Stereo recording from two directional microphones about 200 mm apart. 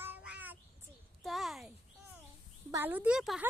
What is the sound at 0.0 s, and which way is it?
Child singing, 10° right (ahead or behind).